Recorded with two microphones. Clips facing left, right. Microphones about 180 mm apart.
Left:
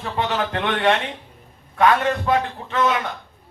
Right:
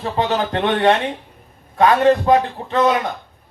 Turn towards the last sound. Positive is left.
turn(degrees=-40)  # may be behind; listen again after turning